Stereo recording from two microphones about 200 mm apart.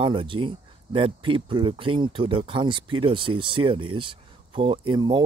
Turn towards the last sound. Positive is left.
turn(degrees=-25)  # may be behind; listen again after turning